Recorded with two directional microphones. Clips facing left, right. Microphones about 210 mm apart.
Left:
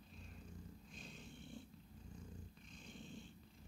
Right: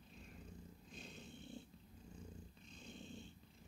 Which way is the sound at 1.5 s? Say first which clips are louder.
Even; 25° right (ahead or behind).